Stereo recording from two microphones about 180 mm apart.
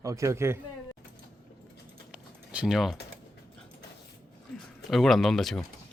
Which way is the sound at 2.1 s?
5° right (ahead or behind).